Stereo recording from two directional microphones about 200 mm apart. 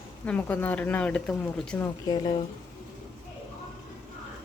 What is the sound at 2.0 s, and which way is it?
Speech, 20° left (ahead or behind).